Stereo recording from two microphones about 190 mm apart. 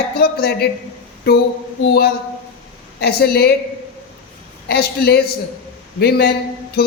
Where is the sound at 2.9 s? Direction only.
55° left (ahead or behind).